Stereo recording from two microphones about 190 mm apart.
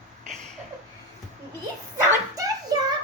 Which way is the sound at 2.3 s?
20° right (ahead or behind).